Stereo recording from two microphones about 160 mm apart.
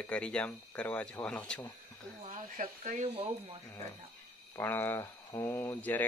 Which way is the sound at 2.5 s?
50° right (ahead or behind).